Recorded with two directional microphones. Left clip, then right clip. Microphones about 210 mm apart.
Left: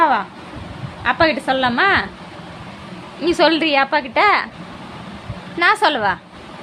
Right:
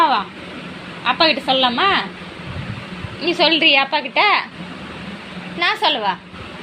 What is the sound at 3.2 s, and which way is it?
A woman's voice, 25° left (ahead or behind).